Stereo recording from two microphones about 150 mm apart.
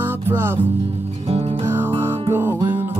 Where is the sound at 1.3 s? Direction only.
45° right (ahead or behind).